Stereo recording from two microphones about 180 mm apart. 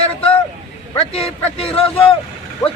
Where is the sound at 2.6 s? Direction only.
20° left (ahead or behind).